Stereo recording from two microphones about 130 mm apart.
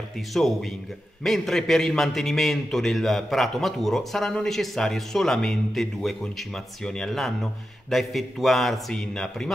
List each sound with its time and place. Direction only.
0.3 s a man's voice: centre (ahead or behind)